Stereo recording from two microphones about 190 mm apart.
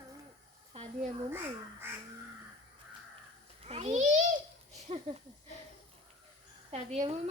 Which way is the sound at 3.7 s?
35° right (ahead or behind).